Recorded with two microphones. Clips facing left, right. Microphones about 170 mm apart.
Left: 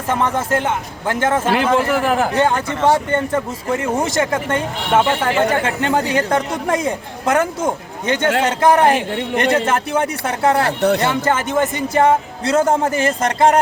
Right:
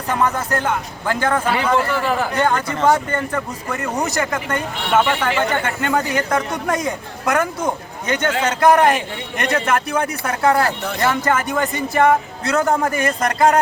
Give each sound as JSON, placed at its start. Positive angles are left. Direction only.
{"t": 0.1, "sound": "speech", "side_deg": 25}
{"t": 1.5, "sound": "a man's voice", "side_deg": 45}
{"t": 2.3, "sound": "speech", "side_deg": 30}
{"t": 10.8, "sound": "speech", "side_deg": 70}
{"t": 11.0, "sound": "speech", "side_deg": 25}